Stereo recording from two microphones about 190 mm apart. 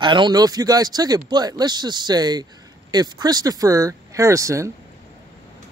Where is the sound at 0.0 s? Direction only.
25° right (ahead or behind).